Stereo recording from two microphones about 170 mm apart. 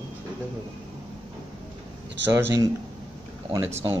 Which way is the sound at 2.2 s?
15° right (ahead or behind).